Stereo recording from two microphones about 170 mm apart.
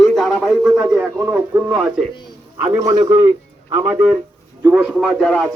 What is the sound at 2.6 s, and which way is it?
Speech, 40° right (ahead or behind).